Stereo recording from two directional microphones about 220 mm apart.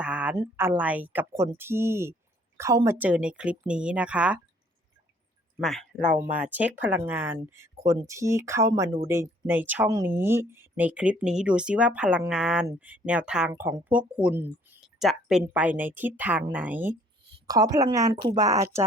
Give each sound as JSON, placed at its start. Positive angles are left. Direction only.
{"t": 0.0, "sound": "speech", "side_deg": -5}
{"t": 5.5, "sound": "speech", "side_deg": 0}